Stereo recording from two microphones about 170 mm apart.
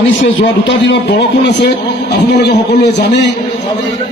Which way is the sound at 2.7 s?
90° left.